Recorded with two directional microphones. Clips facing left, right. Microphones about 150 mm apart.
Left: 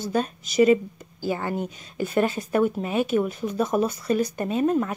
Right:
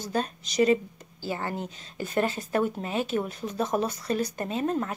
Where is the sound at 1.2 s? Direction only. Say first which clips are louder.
Left 5 dB; 15° left (ahead or behind).